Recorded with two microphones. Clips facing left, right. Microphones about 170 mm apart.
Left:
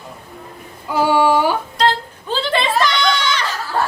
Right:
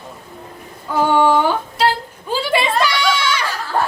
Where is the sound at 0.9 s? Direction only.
10° left (ahead or behind).